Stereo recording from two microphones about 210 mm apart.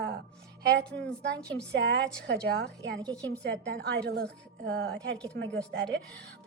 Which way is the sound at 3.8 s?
50° right (ahead or behind).